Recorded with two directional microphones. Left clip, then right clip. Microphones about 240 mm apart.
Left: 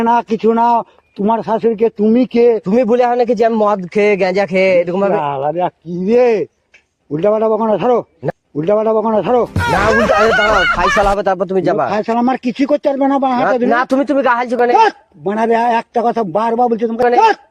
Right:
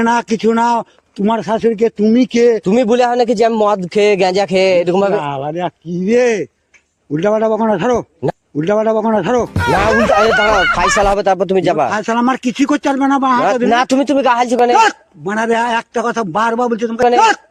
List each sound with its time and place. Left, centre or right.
0.0 s a man's voice: right
9.6 s speech: centre
11.0 s a man's voice: right